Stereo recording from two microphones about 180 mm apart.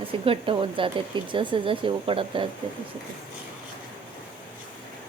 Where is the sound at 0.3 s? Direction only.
30° right (ahead or behind).